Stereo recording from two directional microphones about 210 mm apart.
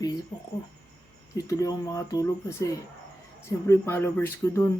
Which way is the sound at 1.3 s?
15° left (ahead or behind).